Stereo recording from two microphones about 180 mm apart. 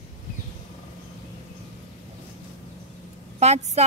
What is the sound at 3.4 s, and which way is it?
Speech, 35° right (ahead or behind).